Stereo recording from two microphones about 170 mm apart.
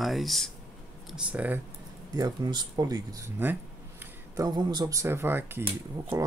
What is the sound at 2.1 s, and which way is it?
Speech, 25° right (ahead or behind).